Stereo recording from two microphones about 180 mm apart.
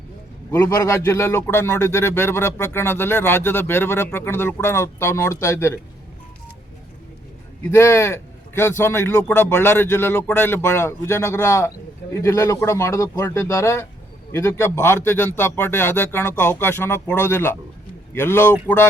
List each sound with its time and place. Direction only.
0.5 s a man's voice: 15° left (ahead or behind)
7.6 s a man's voice: 15° left (ahead or behind)